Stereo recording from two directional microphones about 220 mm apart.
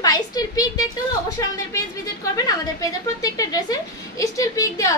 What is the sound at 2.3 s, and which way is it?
A woman's voice, 15° left (ahead or behind).